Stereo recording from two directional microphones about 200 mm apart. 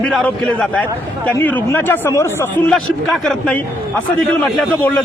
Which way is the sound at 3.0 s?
Centre (ahead or behind).